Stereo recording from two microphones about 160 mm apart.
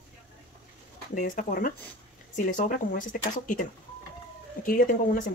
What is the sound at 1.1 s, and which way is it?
Speech, 60° left (ahead or behind).